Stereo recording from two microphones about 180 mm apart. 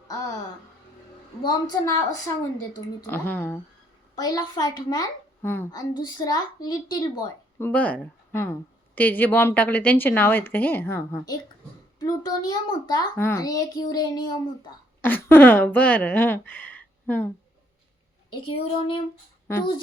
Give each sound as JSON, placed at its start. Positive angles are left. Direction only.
{"t": 0.1, "sound": "speech", "side_deg": 20}
{"t": 1.5, "sound": "a woman's voice", "side_deg": 20}
{"t": 4.1, "sound": "a woman's voice", "side_deg": 20}
{"t": 7.7, "sound": "a woman's voice", "side_deg": 10}
{"t": 15.0, "sound": "speech", "side_deg": 10}
{"t": 18.3, "sound": "a woman's voice", "side_deg": 30}
{"t": 19.5, "sound": "a woman's voice", "side_deg": 15}